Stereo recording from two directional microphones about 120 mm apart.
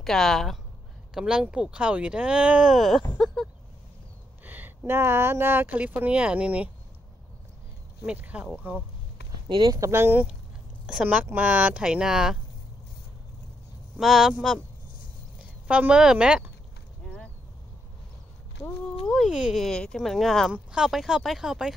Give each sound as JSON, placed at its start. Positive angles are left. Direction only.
{"t": 0.0, "sound": "speech", "side_deg": 0}
{"t": 4.5, "sound": "speech", "side_deg": -15}
{"t": 8.1, "sound": "speech", "side_deg": -10}
{"t": 9.5, "sound": "speech", "side_deg": -45}
{"t": 9.8, "sound": "speech", "side_deg": -20}
{"t": 13.9, "sound": "speech", "side_deg": -5}
{"t": 15.6, "sound": "speech", "side_deg": -10}
{"t": 17.0, "sound": "a sound", "side_deg": 5}
{"t": 19.1, "sound": "speech", "side_deg": -5}